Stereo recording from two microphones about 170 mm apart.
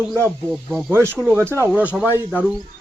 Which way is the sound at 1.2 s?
5° left (ahead or behind).